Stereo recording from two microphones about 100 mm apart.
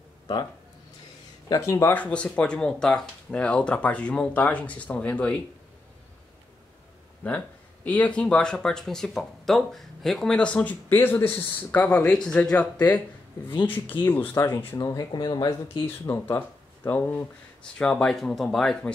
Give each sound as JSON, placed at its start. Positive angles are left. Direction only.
{"t": 1.5, "sound": "speech", "side_deg": 30}
{"t": 2.0, "sound": "speech", "side_deg": 10}
{"t": 7.2, "sound": "speech", "side_deg": 15}
{"t": 14.8, "sound": "speech", "side_deg": 40}
{"t": 15.7, "sound": "speech", "side_deg": 25}
{"t": 17.7, "sound": "speech", "side_deg": 10}